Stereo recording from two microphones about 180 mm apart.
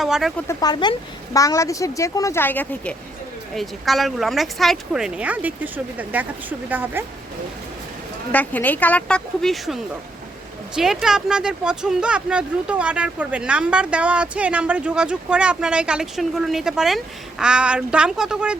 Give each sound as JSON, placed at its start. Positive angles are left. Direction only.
{"t": 0.0, "sound": "speech", "side_deg": 0}
{"t": 0.4, "sound": "a woman's voice", "side_deg": 20}
{"t": 8.3, "sound": "a woman's voice", "side_deg": 10}